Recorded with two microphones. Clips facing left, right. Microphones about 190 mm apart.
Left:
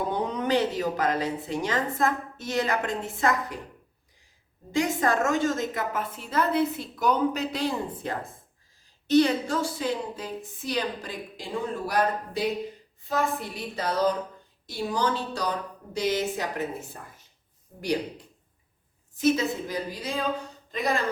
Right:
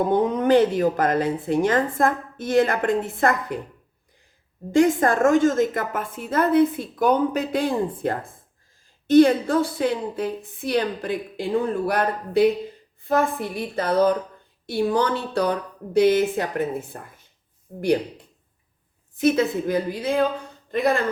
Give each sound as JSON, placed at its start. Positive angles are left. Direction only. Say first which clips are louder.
{"t": 0.0, "sound": "speech", "louder": "right 8 dB", "side_deg": -50}
{"t": 4.7, "sound": "a woman's voice", "louder": "right 7 dB", "side_deg": -50}
{"t": 19.1, "sound": "a woman's voice", "louder": "right 4 dB", "side_deg": -55}